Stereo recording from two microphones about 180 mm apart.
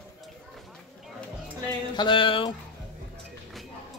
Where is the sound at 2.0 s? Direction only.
25° left (ahead or behind).